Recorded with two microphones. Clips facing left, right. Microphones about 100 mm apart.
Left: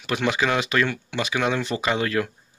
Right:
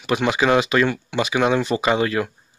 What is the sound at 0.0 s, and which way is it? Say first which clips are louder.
Speech: right 4 dB; 15° right (ahead or behind).